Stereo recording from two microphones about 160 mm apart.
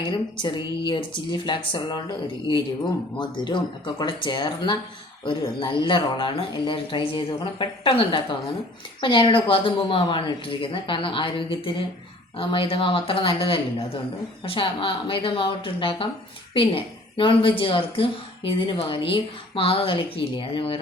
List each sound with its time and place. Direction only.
0.3 s a woman's voice: 30° left (ahead or behind)